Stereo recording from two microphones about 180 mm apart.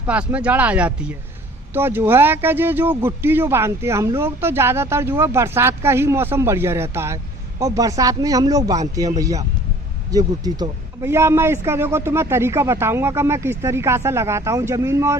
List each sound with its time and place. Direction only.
0.1 s speech: 5° right (ahead or behind)